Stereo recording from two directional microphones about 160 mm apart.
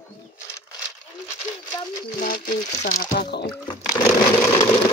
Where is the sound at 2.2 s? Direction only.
55° left (ahead or behind).